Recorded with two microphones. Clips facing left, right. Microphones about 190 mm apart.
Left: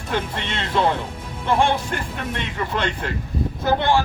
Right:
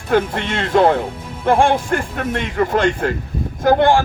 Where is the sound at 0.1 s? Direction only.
50° right (ahead or behind).